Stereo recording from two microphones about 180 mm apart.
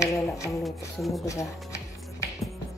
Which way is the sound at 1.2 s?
15° left (ahead or behind).